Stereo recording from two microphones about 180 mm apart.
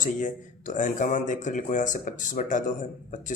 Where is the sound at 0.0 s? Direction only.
45° left (ahead or behind).